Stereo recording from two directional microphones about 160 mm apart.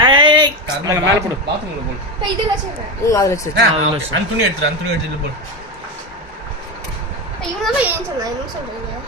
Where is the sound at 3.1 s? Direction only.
20° left (ahead or behind).